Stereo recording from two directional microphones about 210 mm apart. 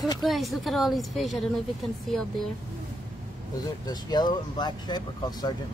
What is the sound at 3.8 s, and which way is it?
Speech, 20° left (ahead or behind).